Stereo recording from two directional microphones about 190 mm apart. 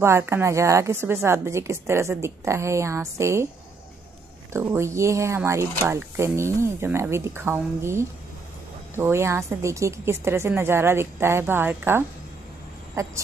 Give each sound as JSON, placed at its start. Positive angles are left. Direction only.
{"t": 0.0, "sound": "speech", "side_deg": -15}
{"t": 4.5, "sound": "speech", "side_deg": -15}